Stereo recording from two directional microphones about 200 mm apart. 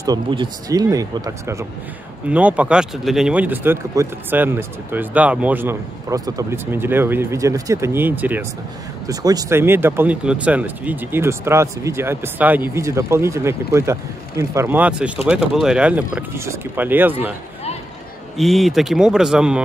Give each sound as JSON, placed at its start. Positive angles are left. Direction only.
{"t": 0.0, "sound": "speech", "side_deg": -20}
{"t": 18.4, "sound": "speech", "side_deg": 0}